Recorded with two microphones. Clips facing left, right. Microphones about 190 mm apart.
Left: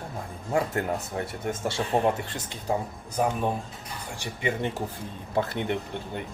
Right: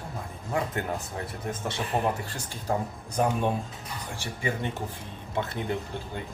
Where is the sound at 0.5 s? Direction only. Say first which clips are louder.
Left 3 dB; 30° left (ahead or behind).